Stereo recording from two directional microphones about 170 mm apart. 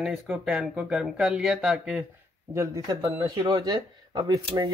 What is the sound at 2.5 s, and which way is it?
Speech, 20° right (ahead or behind).